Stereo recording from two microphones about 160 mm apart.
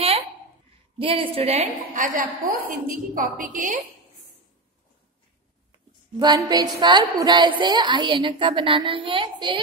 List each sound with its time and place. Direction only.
0.9 s a woman's voice: 35° right (ahead or behind); by 3.8 s 50° right (ahead or behind)
6.1 s a woman's voice: 25° right (ahead or behind)